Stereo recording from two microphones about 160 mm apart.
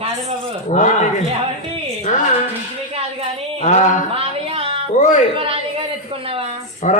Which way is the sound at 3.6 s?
45° left (ahead or behind).